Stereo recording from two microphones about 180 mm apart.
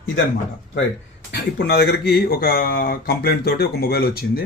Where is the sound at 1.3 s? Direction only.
70° left (ahead or behind).